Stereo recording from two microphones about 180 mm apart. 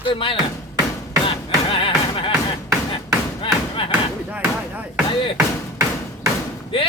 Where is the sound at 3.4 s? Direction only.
30° left (ahead or behind).